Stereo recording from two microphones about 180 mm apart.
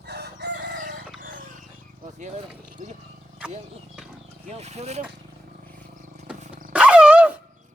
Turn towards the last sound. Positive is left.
turn(degrees=-10)  # may be behind; listen again after turning